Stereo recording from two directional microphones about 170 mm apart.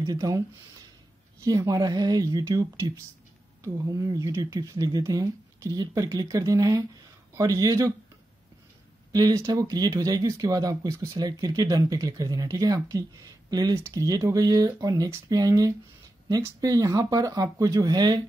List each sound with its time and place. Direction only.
0.0 s speech: 20° right (ahead or behind)
1.4 s speech: 20° right (ahead or behind)
9.1 s speech: 20° right (ahead or behind)